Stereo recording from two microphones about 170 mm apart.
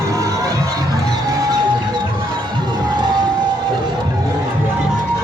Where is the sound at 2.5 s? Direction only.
25° right (ahead or behind).